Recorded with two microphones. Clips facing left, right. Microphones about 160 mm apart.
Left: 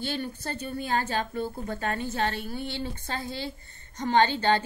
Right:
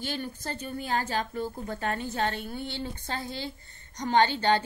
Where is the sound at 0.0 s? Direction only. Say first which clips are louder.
Left 2 dB; 10° right (ahead or behind).